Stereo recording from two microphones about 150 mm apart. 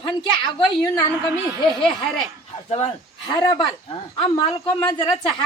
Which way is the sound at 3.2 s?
30° left (ahead or behind).